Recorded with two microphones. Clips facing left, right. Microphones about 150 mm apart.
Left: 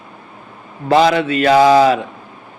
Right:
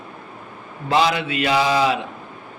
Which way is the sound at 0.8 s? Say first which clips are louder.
Left 7 dB; 45° left (ahead or behind).